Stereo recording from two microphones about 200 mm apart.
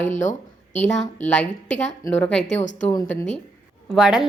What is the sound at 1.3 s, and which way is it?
A woman's voice, 5° left (ahead or behind).